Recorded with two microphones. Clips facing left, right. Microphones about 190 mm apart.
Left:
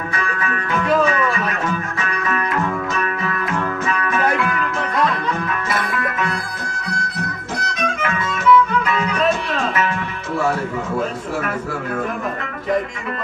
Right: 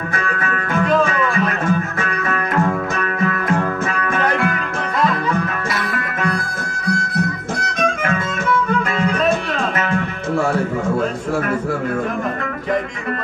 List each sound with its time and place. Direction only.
0.2 s music: 45° right (ahead or behind)
7.8 s music: 50° right (ahead or behind)